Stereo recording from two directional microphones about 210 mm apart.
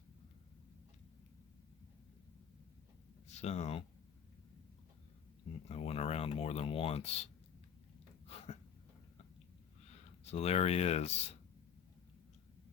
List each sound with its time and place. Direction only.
3.3 s speech: 30° left (ahead or behind)
5.6 s speech: 30° left (ahead or behind)
8.3 s a sound: 30° left (ahead or behind)
10.3 s speech: 30° left (ahead or behind)